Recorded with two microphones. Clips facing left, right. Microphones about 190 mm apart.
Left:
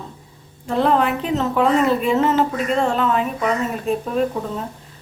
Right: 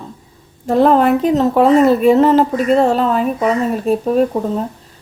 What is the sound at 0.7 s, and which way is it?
Speech, 40° right (ahead or behind).